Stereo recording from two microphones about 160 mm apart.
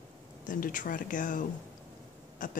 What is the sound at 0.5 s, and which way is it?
Speech, 55° left (ahead or behind).